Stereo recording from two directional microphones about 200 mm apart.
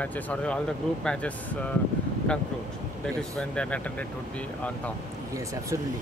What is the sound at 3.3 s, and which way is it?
Speech, 5° left (ahead or behind).